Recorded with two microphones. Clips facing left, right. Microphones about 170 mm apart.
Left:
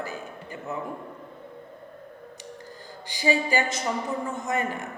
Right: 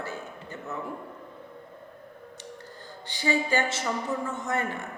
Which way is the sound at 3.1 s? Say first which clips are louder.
Left 2 dB; 15° left (ahead or behind).